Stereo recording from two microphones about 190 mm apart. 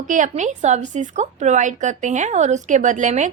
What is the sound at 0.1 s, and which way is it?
A woman's voice, 40° right (ahead or behind).